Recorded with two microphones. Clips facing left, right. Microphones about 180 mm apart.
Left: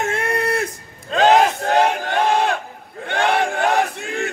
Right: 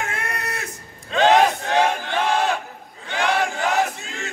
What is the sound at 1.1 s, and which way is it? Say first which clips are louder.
Battle cry: left 2 dB; 45° left (ahead or behind).